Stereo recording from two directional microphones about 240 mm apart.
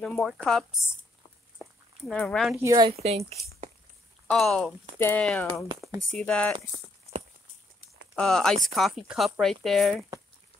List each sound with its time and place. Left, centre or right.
0.0 s speech: centre
1.6 s a sound: centre
2.5 s speech: centre
4.3 s speech: centre
8.2 s speech: centre